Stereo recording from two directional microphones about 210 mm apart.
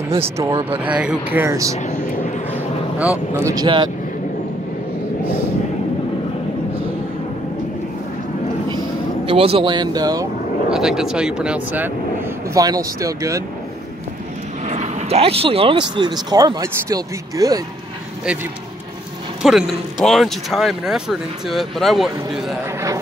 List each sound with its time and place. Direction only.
0.2 s speech: 15° right (ahead or behind)
1.8 s a sound: 35° left (ahead or behind)
3.3 s speech: 15° right (ahead or behind)
9.2 s speech: 25° right (ahead or behind)
10.7 s speech: centre (ahead or behind)
14.6 s speech: 35° right (ahead or behind); by 17.6 s 15° right (ahead or behind)
19.4 s speech: centre (ahead or behind)
22.7 s speech: 15° right (ahead or behind)